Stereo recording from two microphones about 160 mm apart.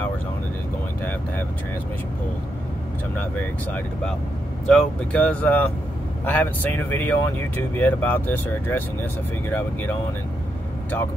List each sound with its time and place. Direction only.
3.2 s speech: 10° left (ahead or behind)